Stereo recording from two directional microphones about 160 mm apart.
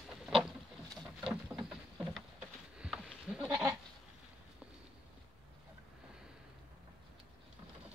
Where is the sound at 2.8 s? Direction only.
5° right (ahead or behind).